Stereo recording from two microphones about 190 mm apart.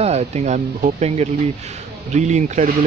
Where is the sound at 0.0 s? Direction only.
35° right (ahead or behind).